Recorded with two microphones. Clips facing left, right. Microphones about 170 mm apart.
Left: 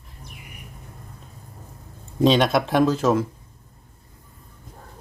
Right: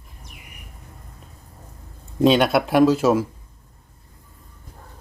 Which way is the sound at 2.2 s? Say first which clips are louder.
Right 1 dB; 5° right (ahead or behind).